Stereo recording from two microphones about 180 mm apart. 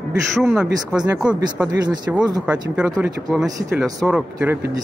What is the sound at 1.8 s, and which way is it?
Speech, 25° right (ahead or behind).